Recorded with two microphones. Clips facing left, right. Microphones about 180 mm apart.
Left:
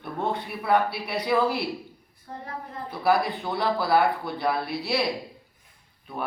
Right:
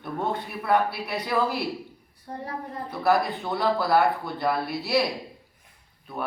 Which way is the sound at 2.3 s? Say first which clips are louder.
Right 3 dB; 35° right (ahead or behind).